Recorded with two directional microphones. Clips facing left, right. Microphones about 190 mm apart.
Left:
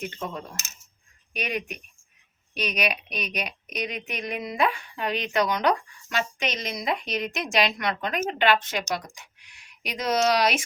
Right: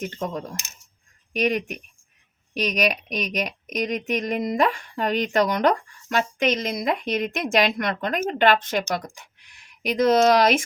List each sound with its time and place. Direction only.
0.0 s a woman's voice: 40° right (ahead or behind)